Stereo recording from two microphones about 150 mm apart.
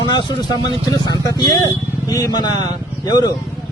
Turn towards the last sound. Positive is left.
turn(degrees=25)  # may be behind; listen again after turning